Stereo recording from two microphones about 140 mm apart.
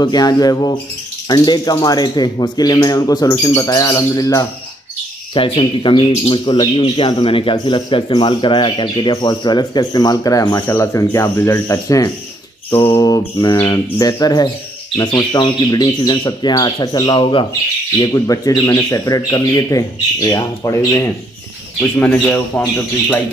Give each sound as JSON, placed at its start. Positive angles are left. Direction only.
{"t": 0.0, "sound": "speech", "side_deg": 30}
{"t": 5.3, "sound": "speech", "side_deg": 40}
{"t": 18.0, "sound": "speech", "side_deg": 25}
{"t": 21.9, "sound": "speech", "side_deg": 10}